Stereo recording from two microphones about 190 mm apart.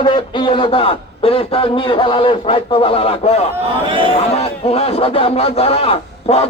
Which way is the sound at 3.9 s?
25° right (ahead or behind).